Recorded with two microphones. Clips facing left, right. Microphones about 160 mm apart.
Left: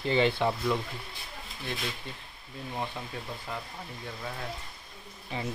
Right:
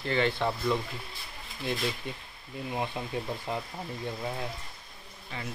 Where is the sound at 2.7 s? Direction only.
15° right (ahead or behind).